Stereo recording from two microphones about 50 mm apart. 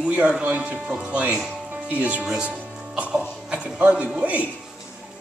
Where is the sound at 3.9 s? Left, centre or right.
Right.